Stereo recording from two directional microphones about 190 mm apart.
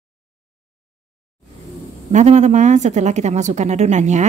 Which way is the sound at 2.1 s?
40° right (ahead or behind).